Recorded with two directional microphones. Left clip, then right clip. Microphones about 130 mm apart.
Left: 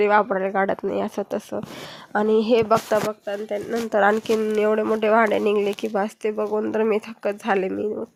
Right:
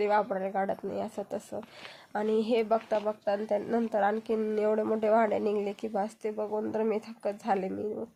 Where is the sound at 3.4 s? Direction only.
25° left (ahead or behind).